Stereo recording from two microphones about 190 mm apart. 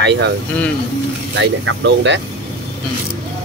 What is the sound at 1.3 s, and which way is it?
Speech, 70° right (ahead or behind).